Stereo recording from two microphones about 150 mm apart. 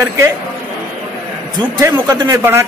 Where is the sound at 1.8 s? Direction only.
20° right (ahead or behind).